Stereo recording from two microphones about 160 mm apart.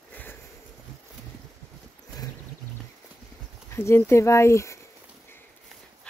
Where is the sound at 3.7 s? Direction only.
15° left (ahead or behind).